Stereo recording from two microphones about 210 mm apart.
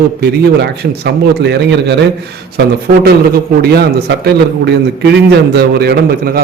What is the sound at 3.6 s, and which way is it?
A man's voice, 50° right (ahead or behind).